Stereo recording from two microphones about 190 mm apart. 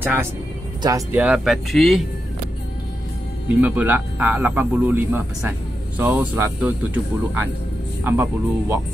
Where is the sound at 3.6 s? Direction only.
10° right (ahead or behind).